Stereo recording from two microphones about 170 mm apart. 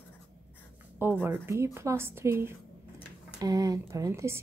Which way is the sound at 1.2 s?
15° right (ahead or behind).